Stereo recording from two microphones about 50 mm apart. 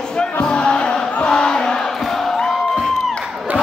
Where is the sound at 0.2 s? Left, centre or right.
Centre.